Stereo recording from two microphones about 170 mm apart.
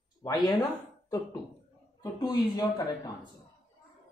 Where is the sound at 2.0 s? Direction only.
25° left (ahead or behind).